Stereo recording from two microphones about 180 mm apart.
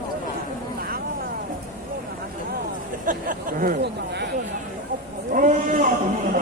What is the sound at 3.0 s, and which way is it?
Speech, 50° right (ahead or behind).